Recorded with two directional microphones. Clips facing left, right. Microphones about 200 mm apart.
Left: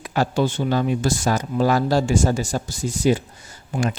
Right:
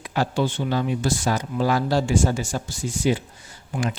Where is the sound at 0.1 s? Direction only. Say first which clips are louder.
Left 2 dB; 45° left (ahead or behind).